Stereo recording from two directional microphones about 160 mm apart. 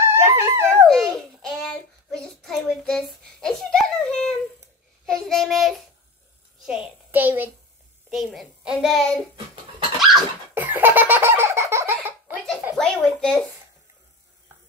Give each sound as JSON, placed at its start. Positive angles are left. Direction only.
{"t": 0.1, "sound": "dog", "side_deg": -15}
{"t": 0.8, "sound": "a sound", "side_deg": 0}
{"t": 5.0, "sound": "child singing", "side_deg": 5}
{"t": 6.6, "sound": "a child's voice", "side_deg": -5}
{"t": 8.1, "sound": "a child's voice", "side_deg": 0}
{"t": 8.7, "sound": "child singing", "side_deg": 5}
{"t": 9.9, "sound": "dog", "side_deg": 0}
{"t": 10.5, "sound": "baby laughter", "side_deg": -10}
{"t": 12.7, "sound": "a sound", "side_deg": 5}